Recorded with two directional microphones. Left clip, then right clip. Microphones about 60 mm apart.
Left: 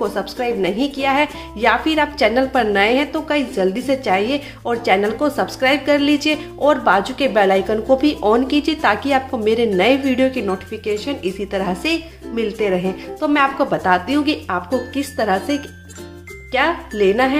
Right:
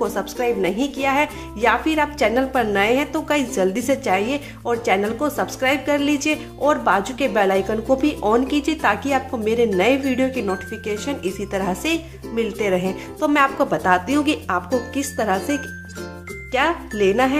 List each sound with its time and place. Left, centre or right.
0.0 s a woman's voice: right
3.1 s a woman's voice: right
4.1 s a woman's voice: right
10.7 s speech: right
12.6 s a woman's voice: right
14.7 s a woman's voice: right